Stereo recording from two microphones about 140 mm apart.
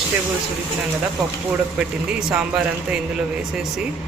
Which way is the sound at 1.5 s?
5° right (ahead or behind).